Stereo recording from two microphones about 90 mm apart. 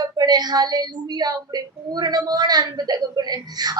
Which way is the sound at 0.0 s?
50° right (ahead or behind).